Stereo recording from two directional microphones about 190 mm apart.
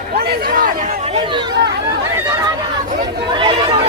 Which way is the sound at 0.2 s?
45° right (ahead or behind).